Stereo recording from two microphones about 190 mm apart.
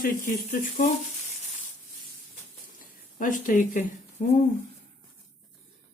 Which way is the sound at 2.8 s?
45° left (ahead or behind).